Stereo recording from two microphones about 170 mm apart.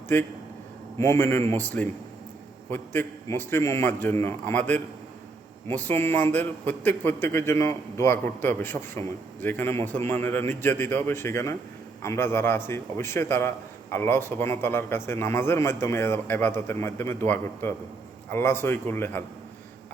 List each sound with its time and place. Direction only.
0.1 s a man's voice: 10° left (ahead or behind)